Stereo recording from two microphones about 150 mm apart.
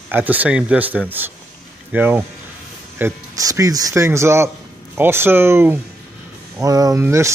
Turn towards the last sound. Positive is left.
turn(degrees=-20)  # may be behind; listen again after turning